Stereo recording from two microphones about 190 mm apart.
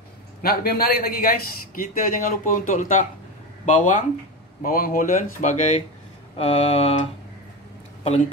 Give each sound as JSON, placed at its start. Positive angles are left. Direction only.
{"t": 0.4, "sound": "speech", "side_deg": 50}
{"t": 3.6, "sound": "mantra", "side_deg": 40}
{"t": 4.6, "sound": "speech", "side_deg": 50}
{"t": 6.3, "sound": "mantra", "side_deg": 30}